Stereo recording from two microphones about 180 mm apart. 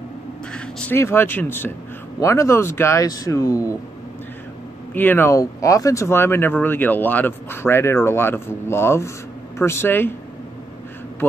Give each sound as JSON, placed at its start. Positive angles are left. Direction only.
{"t": 0.5, "sound": "speech", "side_deg": 5}
{"t": 4.9, "sound": "speech", "side_deg": 10}